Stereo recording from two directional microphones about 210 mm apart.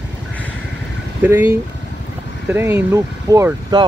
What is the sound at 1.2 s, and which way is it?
Speech, 10° right (ahead or behind).